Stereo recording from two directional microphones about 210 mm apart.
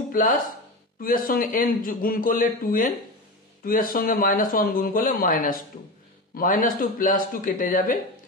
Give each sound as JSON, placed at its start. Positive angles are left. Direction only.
{"t": 0.1, "sound": "a man's voice", "side_deg": 40}